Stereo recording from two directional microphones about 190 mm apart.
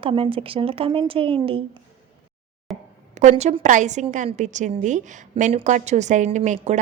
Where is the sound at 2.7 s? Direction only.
Centre (ahead or behind).